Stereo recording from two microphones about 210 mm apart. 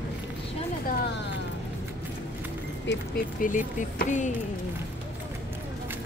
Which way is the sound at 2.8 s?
45° left (ahead or behind).